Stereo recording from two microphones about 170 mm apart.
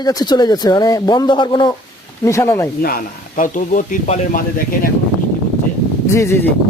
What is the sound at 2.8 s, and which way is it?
Speech, 60° left (ahead or behind).